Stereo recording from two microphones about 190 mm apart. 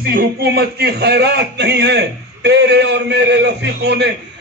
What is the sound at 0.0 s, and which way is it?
A man's voice, 50° right (ahead or behind).